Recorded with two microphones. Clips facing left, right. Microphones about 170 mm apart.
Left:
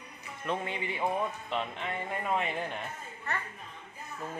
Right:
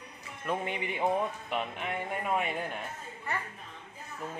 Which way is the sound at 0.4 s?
15° right (ahead or behind).